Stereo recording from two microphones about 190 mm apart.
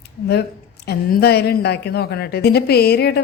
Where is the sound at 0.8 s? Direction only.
60° left (ahead or behind).